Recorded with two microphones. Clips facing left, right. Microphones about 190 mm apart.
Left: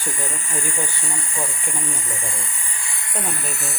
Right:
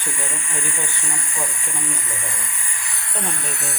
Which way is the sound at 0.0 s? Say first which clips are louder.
Left 1 dB; 40° left (ahead or behind).